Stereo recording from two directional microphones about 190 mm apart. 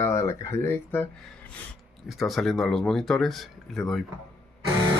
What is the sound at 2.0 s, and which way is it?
Speech, centre (ahead or behind).